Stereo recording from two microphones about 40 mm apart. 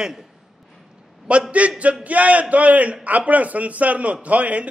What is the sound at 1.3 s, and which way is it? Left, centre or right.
A man's voice, right.